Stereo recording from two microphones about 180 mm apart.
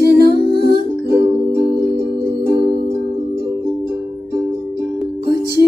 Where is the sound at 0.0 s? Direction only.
60° right (ahead or behind).